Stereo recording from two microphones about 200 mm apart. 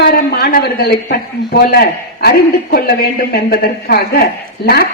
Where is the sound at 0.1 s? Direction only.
50° left (ahead or behind).